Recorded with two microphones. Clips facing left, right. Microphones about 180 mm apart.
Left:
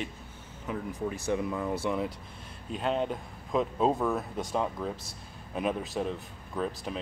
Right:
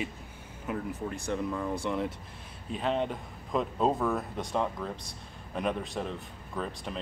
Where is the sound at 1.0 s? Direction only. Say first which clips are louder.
Left 4 dB; 5° left (ahead or behind).